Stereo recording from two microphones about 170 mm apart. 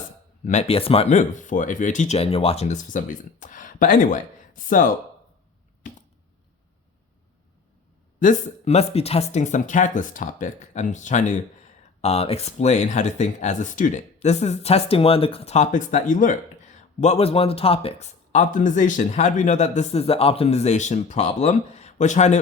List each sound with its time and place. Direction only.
0.4 s speech: 40° left (ahead or behind)
8.2 s speech: 45° left (ahead or behind)
12.0 s speech: 35° left (ahead or behind)
17.0 s speech: 40° left (ahead or behind)